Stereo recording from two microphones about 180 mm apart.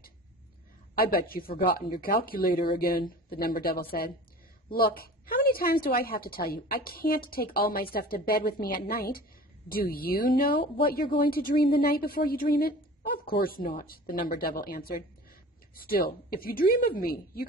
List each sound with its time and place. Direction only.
0.9 s a woman's voice: 55° left (ahead or behind)